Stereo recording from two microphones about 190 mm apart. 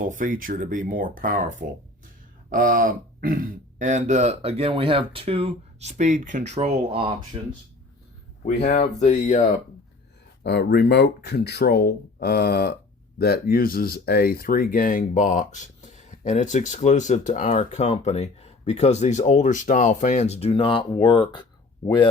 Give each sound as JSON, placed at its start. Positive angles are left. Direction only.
{"t": 0.0, "sound": "speech", "side_deg": -45}
{"t": 2.5, "sound": "speech", "side_deg": -45}
{"t": 8.6, "sound": "speech", "side_deg": 40}
{"t": 10.4, "sound": "speech", "side_deg": 60}